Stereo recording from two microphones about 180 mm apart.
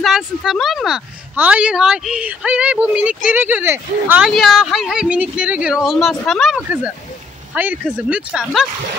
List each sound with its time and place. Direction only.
0.0 s speech: centre (ahead or behind)
4.3 s speech: centre (ahead or behind)